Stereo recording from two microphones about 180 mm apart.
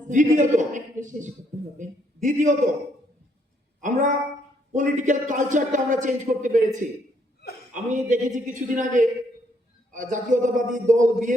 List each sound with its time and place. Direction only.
0.1 s a man's voice: 45° right (ahead or behind)
3.8 s a woman's voice: 45° right (ahead or behind)